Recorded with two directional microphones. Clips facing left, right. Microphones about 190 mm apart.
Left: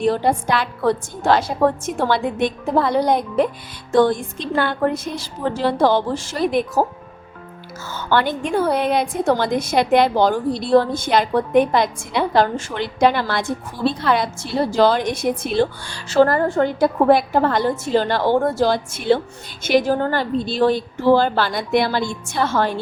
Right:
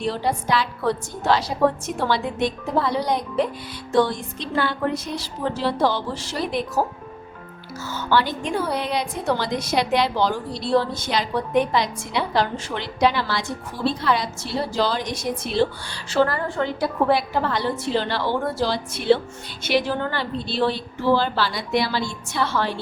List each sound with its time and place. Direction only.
0.0 s a woman's voice: 50° left (ahead or behind)
7.9 s a woman's voice: 55° left (ahead or behind)